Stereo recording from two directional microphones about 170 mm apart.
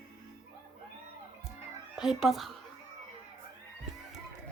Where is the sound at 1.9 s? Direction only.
Centre (ahead or behind).